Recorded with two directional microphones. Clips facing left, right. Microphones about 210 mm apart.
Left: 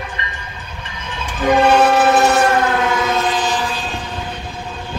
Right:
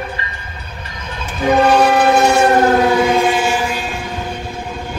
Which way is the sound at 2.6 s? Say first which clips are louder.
Right 5 dB; 35° right (ahead or behind).